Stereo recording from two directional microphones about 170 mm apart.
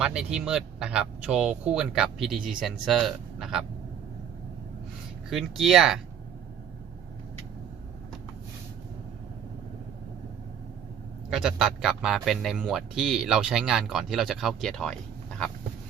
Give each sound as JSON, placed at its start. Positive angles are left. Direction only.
{"t": 0.0, "sound": "speech", "side_deg": -5}
{"t": 5.3, "sound": "speech", "side_deg": 0}
{"t": 11.3, "sound": "speech", "side_deg": -5}